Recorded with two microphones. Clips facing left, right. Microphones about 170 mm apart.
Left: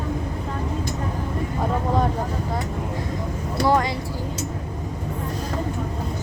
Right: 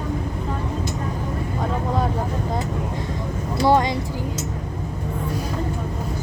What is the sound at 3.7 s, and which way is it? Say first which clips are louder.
Speech: right 3 dB; 25° right (ahead or behind).